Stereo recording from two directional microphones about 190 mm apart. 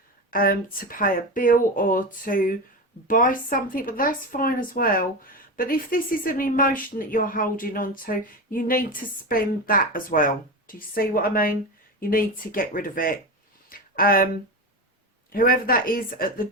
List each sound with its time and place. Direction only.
0.3 s a woman's voice: 50° left (ahead or behind)
13.7 s a sound: 50° left (ahead or behind)
15.3 s a woman's voice: 50° left (ahead or behind)